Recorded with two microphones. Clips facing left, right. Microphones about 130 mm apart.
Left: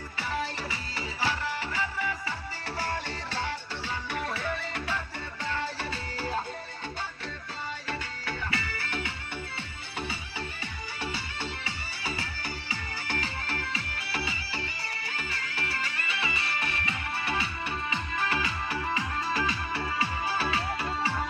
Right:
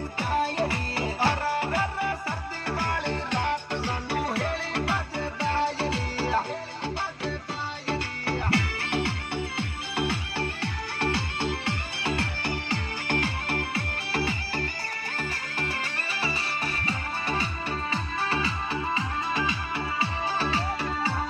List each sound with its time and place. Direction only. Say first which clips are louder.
0.2 s music: right 7 dB; 55° right (ahead or behind); by 6.4 s 75° right (ahead or behind)
8.3 s music: right 7 dB; 70° right (ahead or behind); by 16.9 s 35° right (ahead or behind)
17.9 s music: right 1 dB; 30° right (ahead or behind)